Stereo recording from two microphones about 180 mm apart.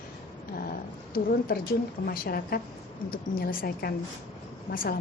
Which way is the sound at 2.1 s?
55° left (ahead or behind).